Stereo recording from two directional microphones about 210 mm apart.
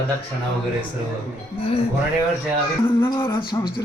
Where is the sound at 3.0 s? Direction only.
15° left (ahead or behind).